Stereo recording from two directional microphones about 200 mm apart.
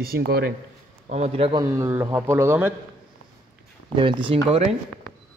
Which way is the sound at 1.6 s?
15° right (ahead or behind).